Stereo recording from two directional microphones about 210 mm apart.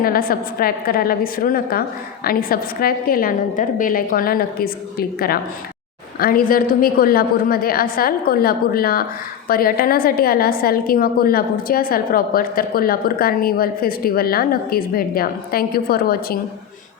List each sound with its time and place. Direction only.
0.0 s a woman's voice: 45° left (ahead or behind)